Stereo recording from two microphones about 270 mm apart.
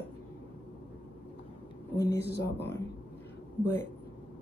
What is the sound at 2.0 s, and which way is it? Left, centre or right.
Speech, left.